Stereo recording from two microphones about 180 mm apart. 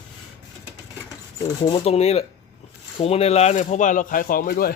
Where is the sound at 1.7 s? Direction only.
35° left (ahead or behind); by 4.7 s 55° left (ahead or behind).